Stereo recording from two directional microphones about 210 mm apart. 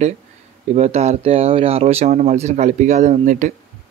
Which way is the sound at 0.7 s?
30° right (ahead or behind).